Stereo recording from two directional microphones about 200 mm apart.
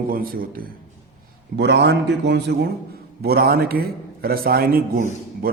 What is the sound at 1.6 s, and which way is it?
A man's voice, 55° right (ahead or behind).